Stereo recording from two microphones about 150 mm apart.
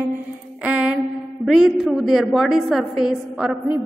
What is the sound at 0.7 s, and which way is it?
Mantra, 10° right (ahead or behind).